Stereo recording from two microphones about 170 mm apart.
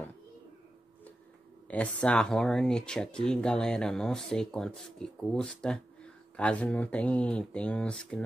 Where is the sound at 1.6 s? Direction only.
5° left (ahead or behind).